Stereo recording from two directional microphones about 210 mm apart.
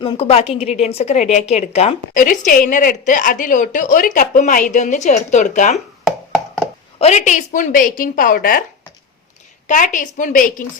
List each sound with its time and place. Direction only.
0.0 s a woman's voice: 25° left (ahead or behind)
5.7 s a sound: centre (ahead or behind)
7.0 s a woman's voice: 35° left (ahead or behind)
9.6 s a woman's voice: 40° left (ahead or behind)